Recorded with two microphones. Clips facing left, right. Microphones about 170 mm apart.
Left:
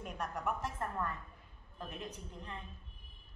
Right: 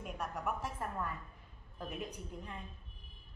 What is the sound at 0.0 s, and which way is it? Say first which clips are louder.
A woman's voice: left 1 dB; 5° right (ahead or behind).